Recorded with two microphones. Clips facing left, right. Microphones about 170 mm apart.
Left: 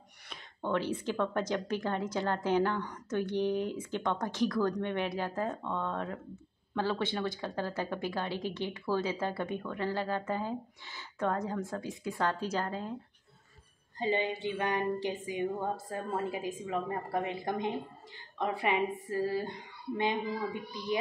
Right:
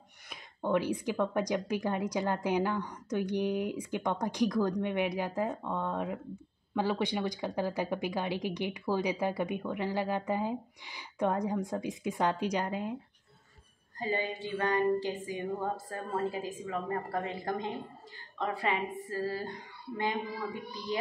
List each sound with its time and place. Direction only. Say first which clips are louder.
0.3 s speech: right 3 dB; 10° right (ahead or behind)
13.9 s a woman's voice: left 2 dB; 25° left (ahead or behind)